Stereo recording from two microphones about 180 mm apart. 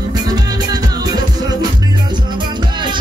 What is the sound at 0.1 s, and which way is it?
Music, 20° right (ahead or behind).